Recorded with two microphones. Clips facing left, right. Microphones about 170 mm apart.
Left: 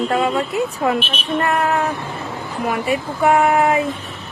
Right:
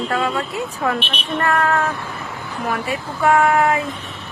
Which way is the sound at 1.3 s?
15° left (ahead or behind).